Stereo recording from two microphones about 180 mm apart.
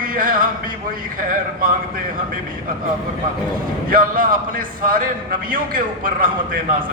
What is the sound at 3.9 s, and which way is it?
Speech, 50° right (ahead or behind).